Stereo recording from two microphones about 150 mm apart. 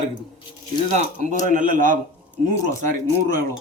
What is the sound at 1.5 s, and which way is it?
Speech, 60° right (ahead or behind).